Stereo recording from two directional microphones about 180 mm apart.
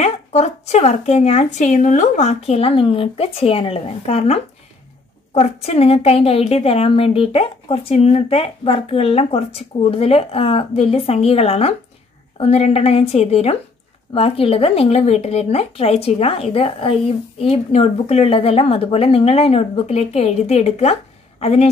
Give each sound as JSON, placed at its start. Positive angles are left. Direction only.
{"t": 0.0, "sound": "a woman's voice", "side_deg": 40}